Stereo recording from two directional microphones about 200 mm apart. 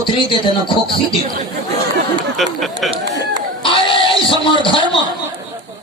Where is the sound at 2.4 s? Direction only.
Centre (ahead or behind).